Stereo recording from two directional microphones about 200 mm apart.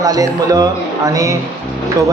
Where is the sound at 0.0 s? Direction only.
20° right (ahead or behind).